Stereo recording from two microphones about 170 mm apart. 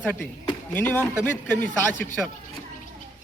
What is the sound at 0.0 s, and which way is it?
A man's voice, 10° left (ahead or behind).